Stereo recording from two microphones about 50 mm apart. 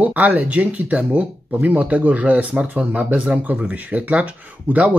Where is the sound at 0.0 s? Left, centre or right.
Right.